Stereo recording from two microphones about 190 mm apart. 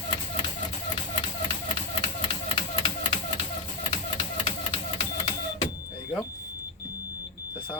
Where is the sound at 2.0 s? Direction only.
25° left (ahead or behind).